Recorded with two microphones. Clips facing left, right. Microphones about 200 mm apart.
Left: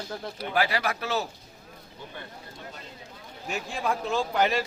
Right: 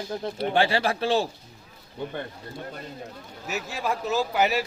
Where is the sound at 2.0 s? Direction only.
60° right (ahead or behind).